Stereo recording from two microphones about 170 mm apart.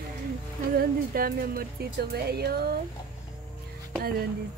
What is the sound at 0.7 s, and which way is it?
Speech, 60° right (ahead or behind).